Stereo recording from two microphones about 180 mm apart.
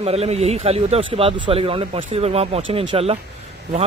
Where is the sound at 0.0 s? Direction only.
35° right (ahead or behind).